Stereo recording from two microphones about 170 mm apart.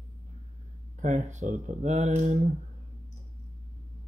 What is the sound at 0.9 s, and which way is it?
Speech, 45° right (ahead or behind).